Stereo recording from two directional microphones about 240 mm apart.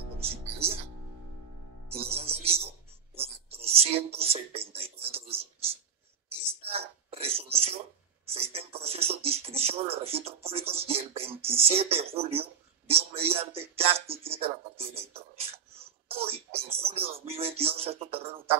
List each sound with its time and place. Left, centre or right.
0.2 s music: right
1.9 s music: right
3.3 s a sound: right
6.2 s whispering: right
8.3 s a sound: right
17.1 s music: right